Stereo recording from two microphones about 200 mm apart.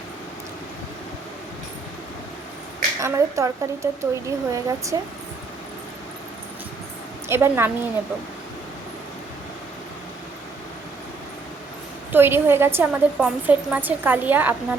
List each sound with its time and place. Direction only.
3.0 s a woman's voice: 15° right (ahead or behind)
7.3 s a woman's voice: 10° right (ahead or behind)
12.1 s a woman's voice: 10° right (ahead or behind)